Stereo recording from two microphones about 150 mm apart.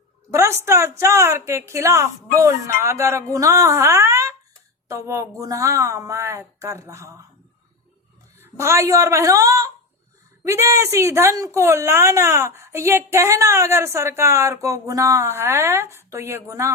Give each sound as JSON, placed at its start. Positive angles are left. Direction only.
{"t": 0.3, "sound": "a woman's voice", "side_deg": -15}
{"t": 8.4, "sound": "a woman's voice", "side_deg": -20}